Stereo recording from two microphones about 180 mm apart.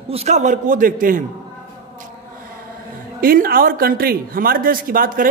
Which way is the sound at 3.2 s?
55° right (ahead or behind).